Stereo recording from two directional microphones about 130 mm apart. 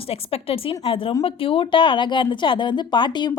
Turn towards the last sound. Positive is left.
turn(degrees=35)  # may be behind; listen again after turning